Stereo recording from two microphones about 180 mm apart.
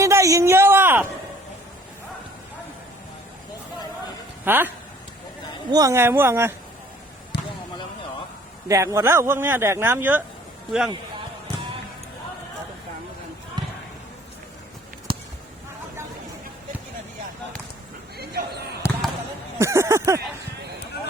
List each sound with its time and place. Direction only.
0.0 s a sound: 15° right (ahead or behind)
4.4 s speech: 10° right (ahead or behind)
5.7 s speech: 15° right (ahead or behind)
7.3 s basketball bounce: 70° left (ahead or behind)
8.6 s speech: 15° right (ahead or behind)
18.8 s basketball bounce: 15° left (ahead or behind)
19.5 s a sound: 15° right (ahead or behind)